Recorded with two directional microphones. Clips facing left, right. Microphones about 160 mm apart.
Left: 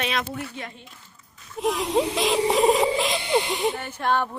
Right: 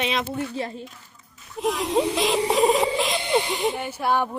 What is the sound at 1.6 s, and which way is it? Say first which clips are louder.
Speech: even; centre (ahead or behind).